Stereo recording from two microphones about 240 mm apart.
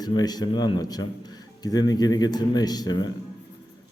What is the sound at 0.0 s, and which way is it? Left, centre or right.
A man's voice, centre.